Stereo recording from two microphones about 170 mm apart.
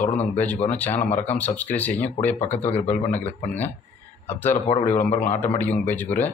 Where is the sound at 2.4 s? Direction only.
45° left (ahead or behind).